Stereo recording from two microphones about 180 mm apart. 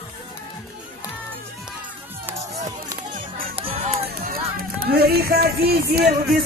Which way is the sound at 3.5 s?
35° right (ahead or behind).